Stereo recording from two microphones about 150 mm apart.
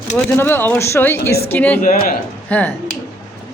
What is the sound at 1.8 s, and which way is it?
Speech, 70° left (ahead or behind).